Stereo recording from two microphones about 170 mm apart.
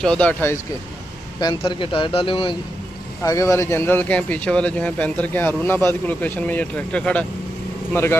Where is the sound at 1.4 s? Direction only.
30° left (ahead or behind).